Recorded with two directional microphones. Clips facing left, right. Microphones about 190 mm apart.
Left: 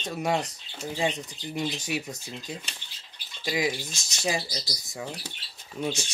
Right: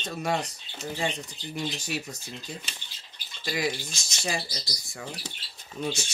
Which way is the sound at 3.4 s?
15° left (ahead or behind).